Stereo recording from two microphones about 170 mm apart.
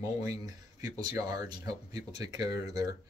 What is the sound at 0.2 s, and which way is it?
Speech, 20° right (ahead or behind).